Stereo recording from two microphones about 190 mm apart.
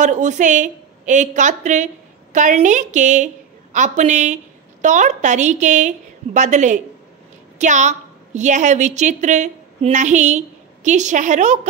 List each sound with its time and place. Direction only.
0.0 s a woman's voice: 40° right (ahead or behind)